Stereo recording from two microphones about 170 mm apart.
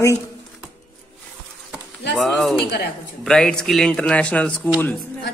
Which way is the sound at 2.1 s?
Centre (ahead or behind).